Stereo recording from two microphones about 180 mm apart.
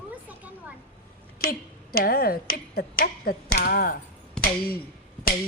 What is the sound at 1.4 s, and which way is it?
Speech, 55° left (ahead or behind).